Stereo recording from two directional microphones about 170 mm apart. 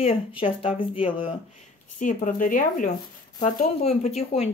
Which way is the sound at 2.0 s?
50° left (ahead or behind).